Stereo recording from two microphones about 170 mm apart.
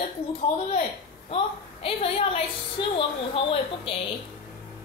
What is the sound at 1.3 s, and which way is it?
A woman's voice, 35° left (ahead or behind).